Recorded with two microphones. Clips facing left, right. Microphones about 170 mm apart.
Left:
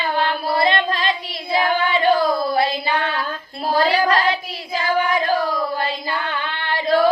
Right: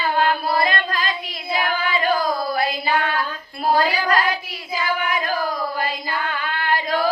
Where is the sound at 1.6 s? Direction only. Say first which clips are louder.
Left 4 dB; 30° left (ahead or behind).